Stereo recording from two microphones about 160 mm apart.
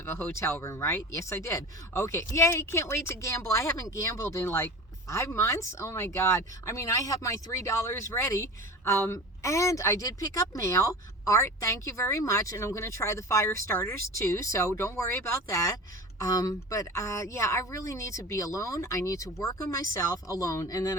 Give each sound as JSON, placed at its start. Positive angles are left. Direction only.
{"t": 0.0, "sound": "speech", "side_deg": 15}